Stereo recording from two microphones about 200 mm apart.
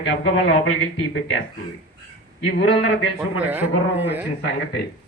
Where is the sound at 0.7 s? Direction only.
90° left.